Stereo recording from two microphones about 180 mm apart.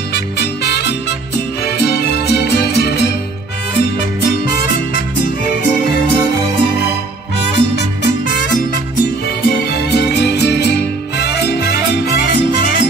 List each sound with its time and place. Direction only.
0.1 s music: 65° left (ahead or behind)
7.3 s music: 70° left (ahead or behind)
9.5 s music: 65° left (ahead or behind)